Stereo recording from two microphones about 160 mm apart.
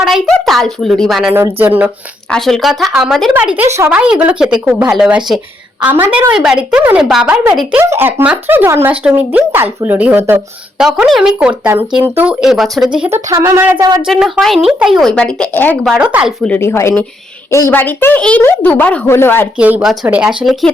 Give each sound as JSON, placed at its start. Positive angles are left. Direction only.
{"t": 0.0, "sound": "speech", "side_deg": 0}
{"t": 1.3, "sound": "speech", "side_deg": -10}
{"t": 2.3, "sound": "speech", "side_deg": 0}
{"t": 10.8, "sound": "speech", "side_deg": -5}
{"t": 13.1, "sound": "speech", "side_deg": -15}
{"t": 14.0, "sound": "speech", "side_deg": 0}
{"t": 16.0, "sound": "speech", "side_deg": -5}
{"t": 16.4, "sound": "speech", "side_deg": 10}
{"t": 19.5, "sound": "speech", "side_deg": -10}